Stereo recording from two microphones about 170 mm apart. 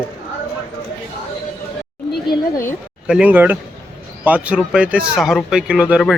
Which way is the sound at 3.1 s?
10° right (ahead or behind).